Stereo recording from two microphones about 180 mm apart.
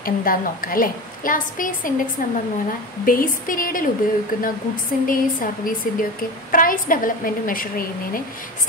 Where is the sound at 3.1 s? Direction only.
50° left (ahead or behind).